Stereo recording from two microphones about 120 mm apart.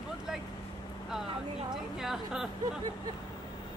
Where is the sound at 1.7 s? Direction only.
5° right (ahead or behind).